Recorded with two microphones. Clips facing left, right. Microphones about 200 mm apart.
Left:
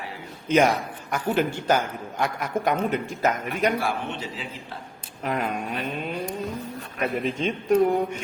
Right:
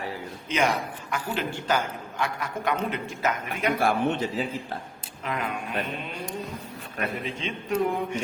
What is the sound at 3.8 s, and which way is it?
Speech, 50° right (ahead or behind).